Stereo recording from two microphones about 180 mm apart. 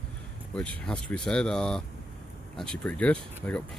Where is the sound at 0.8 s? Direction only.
5° left (ahead or behind).